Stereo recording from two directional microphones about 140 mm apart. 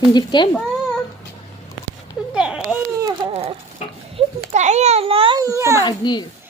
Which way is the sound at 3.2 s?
30° right (ahead or behind).